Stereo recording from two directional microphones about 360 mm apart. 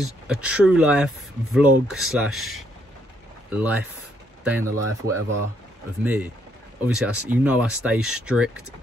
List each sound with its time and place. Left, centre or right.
0.0 s speech: centre